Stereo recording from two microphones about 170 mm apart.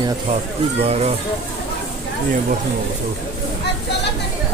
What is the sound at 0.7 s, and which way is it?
Speech, 40° right (ahead or behind).